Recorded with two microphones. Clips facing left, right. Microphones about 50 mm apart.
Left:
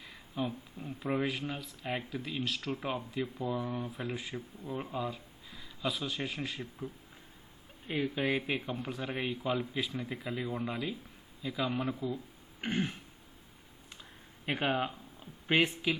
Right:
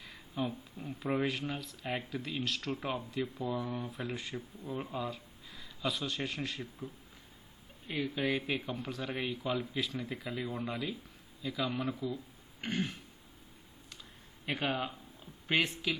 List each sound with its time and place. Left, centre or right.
0.0 s speech: centre
8.1 s speech: centre
11.9 s throat clearing: left
14.4 s speech: left